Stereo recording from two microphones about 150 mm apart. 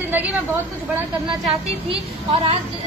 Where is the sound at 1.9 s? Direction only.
35° right (ahead or behind).